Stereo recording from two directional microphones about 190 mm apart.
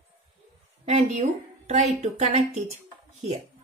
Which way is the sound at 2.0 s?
35° right (ahead or behind).